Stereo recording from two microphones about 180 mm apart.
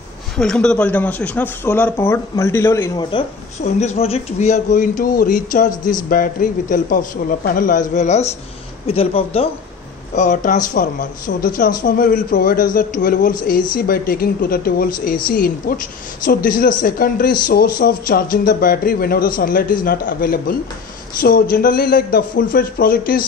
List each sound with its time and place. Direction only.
0.4 s speech: 5° left (ahead or behind)
3.1 s a man's voice: 30° left (ahead or behind); by 7.8 s 50° left (ahead or behind)
7.9 s a man's voice: 40° left (ahead or behind)